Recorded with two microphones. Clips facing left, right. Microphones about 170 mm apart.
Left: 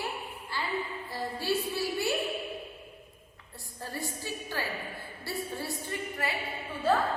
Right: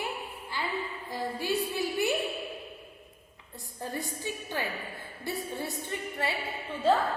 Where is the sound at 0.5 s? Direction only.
15° right (ahead or behind).